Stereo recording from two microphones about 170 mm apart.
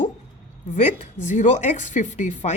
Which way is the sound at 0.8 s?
45° left (ahead or behind).